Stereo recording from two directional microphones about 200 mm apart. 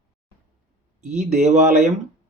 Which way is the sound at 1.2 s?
35° right (ahead or behind).